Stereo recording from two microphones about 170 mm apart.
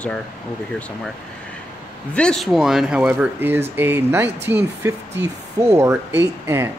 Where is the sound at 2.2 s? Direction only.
5° left (ahead or behind).